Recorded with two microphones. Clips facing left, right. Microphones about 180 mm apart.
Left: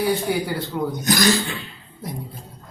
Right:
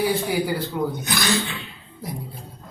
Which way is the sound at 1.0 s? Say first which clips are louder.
Left 7 dB; 40° left (ahead or behind).